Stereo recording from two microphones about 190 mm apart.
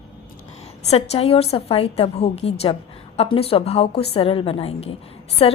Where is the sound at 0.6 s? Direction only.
35° left (ahead or behind).